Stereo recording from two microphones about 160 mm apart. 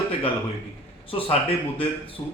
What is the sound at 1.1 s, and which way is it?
Speech, 35° left (ahead or behind).